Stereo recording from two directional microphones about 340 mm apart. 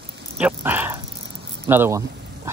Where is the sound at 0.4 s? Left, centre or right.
Centre.